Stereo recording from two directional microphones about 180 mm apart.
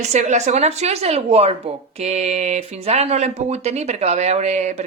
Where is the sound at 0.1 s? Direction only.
40° right (ahead or behind).